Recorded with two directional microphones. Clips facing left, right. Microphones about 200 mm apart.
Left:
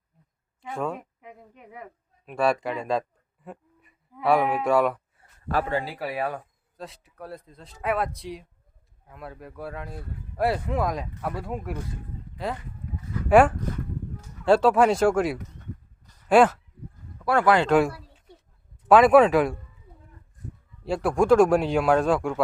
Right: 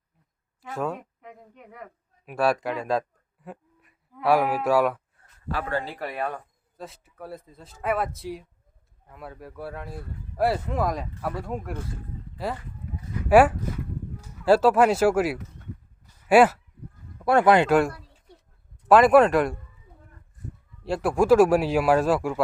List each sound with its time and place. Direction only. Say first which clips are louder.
0.6 s a woman's voice: even; 5° right (ahead or behind)
3.4 s a sound: even; centre (ahead or behind)
5.6 s speech: left 1 dB; 10° left (ahead or behind); by 16.6 s 5° right (ahead or behind)
17.2 s speech: right 2 dB; 20° right (ahead or behind)
17.7 s a sound: even; centre (ahead or behind)
18.9 s speech: even; centre (ahead or behind)
20.8 s speech: even; centre (ahead or behind)